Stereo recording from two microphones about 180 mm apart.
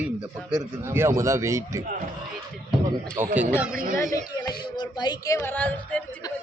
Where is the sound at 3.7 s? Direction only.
50° right (ahead or behind).